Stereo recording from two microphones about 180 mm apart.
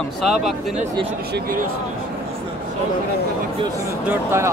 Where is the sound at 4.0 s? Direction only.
10° right (ahead or behind).